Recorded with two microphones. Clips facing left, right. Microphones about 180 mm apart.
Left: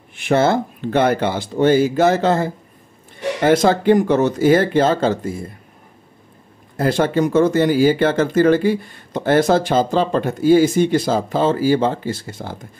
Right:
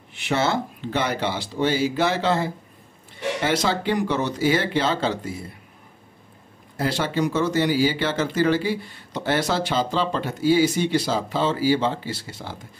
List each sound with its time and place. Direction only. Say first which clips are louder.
0.1 s speech: left 7 dB; 50° left (ahead or behind)
6.8 s speech: left 6 dB; 50° left (ahead or behind)